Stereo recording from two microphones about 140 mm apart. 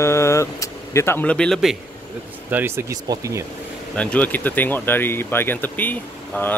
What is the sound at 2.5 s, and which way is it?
Speech, 15° right (ahead or behind).